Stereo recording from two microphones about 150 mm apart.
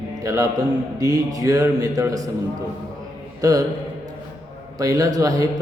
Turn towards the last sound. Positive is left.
turn(degrees=-25)  # may be behind; listen again after turning